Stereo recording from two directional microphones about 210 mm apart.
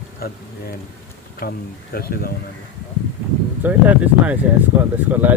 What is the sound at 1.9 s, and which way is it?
Speech, 45° left (ahead or behind).